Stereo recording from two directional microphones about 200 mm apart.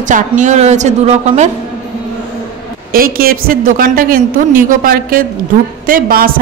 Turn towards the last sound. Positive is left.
turn(degrees=-45)  # may be behind; listen again after turning